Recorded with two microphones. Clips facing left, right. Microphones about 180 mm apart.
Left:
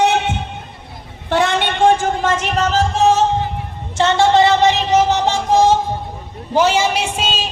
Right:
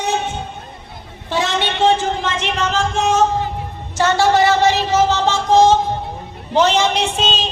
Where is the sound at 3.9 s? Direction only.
20° left (ahead or behind).